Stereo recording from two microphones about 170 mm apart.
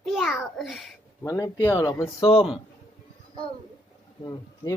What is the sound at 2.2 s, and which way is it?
Speech, 30° left (ahead or behind).